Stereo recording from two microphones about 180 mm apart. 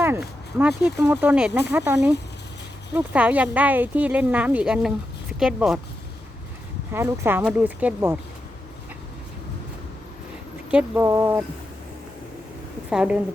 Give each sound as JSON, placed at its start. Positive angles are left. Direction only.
{"t": 0.2, "sound": "speech", "side_deg": 0}
{"t": 6.9, "sound": "speech", "side_deg": -15}
{"t": 10.7, "sound": "speech", "side_deg": -5}
{"t": 12.9, "sound": "speech", "side_deg": -5}